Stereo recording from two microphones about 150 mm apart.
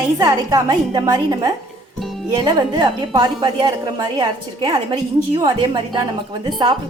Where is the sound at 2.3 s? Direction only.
30° right (ahead or behind).